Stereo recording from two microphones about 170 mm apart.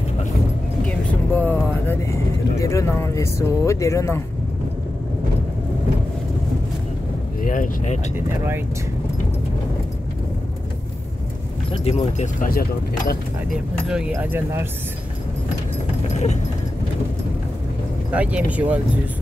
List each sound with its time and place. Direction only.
0.8 s vehicle: 10° left (ahead or behind)
2.6 s speech: 20° left (ahead or behind)
7.4 s speech: 50° left (ahead or behind)
11.7 s speech: 35° left (ahead or behind)
12.4 s speech: 60° left (ahead or behind)
14.1 s speech: 15° right (ahead or behind)
16.1 s a sound: 40° left (ahead or behind)
18.1 s speech: 10° right (ahead or behind)